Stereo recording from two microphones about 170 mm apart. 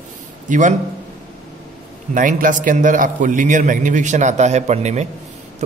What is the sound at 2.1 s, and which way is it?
A man's voice, 50° right (ahead or behind).